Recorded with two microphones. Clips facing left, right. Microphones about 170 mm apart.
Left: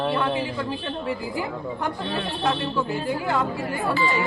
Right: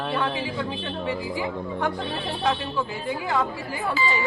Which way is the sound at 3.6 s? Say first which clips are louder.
Left 3 dB; 65° left (ahead or behind).